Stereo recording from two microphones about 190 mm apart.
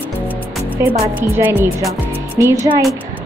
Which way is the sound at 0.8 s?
15° right (ahead or behind).